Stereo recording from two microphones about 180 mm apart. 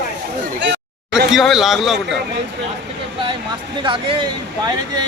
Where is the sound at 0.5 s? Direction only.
75° right (ahead or behind).